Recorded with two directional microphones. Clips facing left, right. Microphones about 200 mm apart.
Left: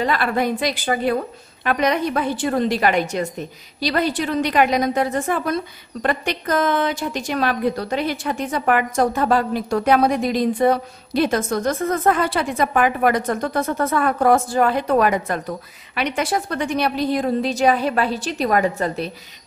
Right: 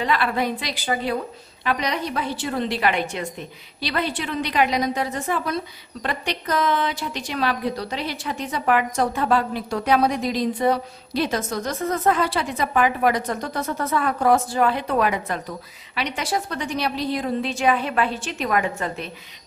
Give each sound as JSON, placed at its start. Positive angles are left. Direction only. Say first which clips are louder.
{"t": 0.0, "sound": "a woman's voice", "louder": "left 2 dB", "side_deg": 45}